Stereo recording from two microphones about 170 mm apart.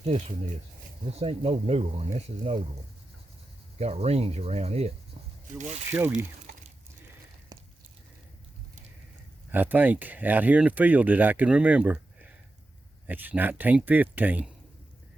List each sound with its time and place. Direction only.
0.0 s speech: 40° right (ahead or behind)
3.8 s speech: 35° right (ahead or behind)
5.9 s speech: 10° right (ahead or behind)
7.5 s a sound: 25° right (ahead or behind)
9.5 s speech: 10° right (ahead or behind)